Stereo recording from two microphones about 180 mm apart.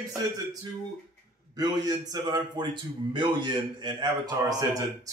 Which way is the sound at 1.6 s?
20° right (ahead or behind).